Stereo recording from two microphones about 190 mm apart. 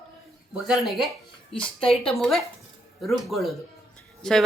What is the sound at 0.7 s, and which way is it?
Speech, centre (ahead or behind).